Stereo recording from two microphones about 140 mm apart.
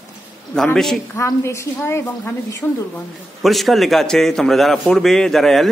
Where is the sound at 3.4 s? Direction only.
Centre (ahead or behind).